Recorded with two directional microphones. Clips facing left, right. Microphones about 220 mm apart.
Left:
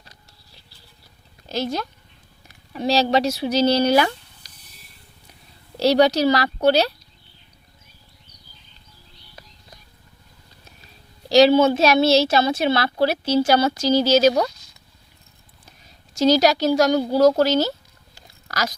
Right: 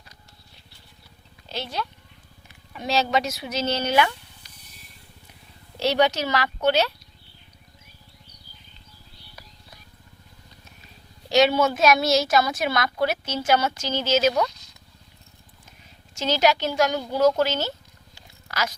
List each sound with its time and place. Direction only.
1.5 s speech: 45° left (ahead or behind)
5.8 s a woman's voice: 35° left (ahead or behind)
11.3 s a woman's voice: 35° left (ahead or behind)
16.1 s speech: 40° left (ahead or behind)